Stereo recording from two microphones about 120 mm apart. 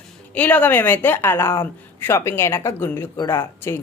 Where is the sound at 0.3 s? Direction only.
15° left (ahead or behind).